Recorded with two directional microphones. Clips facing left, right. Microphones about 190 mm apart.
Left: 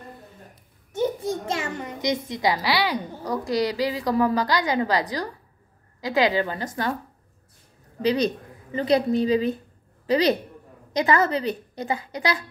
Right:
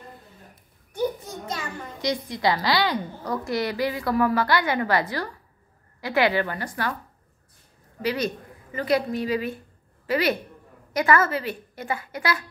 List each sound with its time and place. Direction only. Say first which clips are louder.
0.9 s a sound: left 3 dB; 25° left (ahead or behind)
2.0 s a woman's voice: left 1 dB; 20° left (ahead or behind)
8.7 s a woman's voice: left 3 dB; 25° left (ahead or behind)